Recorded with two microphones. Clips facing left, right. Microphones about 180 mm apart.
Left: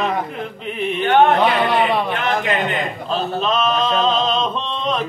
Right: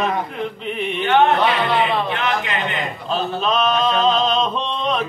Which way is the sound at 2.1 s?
45° left (ahead or behind).